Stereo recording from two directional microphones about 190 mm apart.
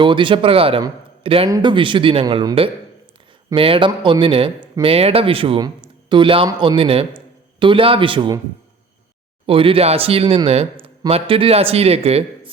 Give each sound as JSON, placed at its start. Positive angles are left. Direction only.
{"t": 0.0, "sound": "speech", "side_deg": -25}
{"t": 9.5, "sound": "speech", "side_deg": -30}